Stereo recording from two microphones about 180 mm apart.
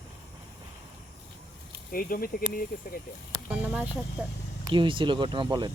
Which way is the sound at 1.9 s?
50° left (ahead or behind).